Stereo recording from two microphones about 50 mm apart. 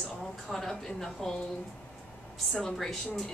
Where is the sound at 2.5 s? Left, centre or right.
Centre.